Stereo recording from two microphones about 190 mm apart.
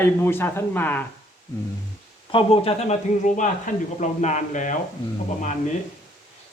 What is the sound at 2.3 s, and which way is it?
Speech, 30° left (ahead or behind).